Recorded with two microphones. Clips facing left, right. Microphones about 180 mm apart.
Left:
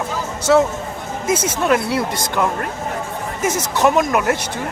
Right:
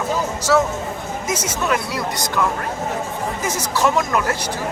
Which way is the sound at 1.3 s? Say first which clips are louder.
Left 5 dB; 30° left (ahead or behind).